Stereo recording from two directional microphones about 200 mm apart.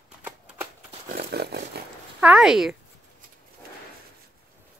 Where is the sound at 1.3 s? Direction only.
55° right (ahead or behind).